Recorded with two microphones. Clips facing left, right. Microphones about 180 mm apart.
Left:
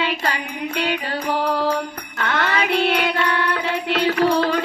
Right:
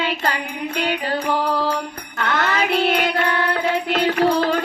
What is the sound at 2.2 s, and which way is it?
Music, 45° right (ahead or behind).